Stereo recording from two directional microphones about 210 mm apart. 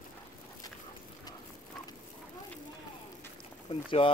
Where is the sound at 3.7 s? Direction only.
25° left (ahead or behind).